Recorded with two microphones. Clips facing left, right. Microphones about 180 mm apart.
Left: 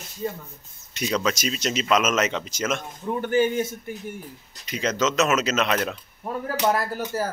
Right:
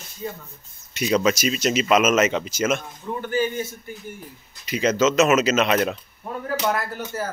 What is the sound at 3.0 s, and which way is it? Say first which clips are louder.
Speech: left 3 dB; 35° left (ahead or behind).